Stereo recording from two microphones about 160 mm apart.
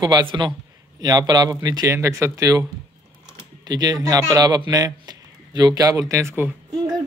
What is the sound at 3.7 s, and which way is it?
Speech, 25° right (ahead or behind).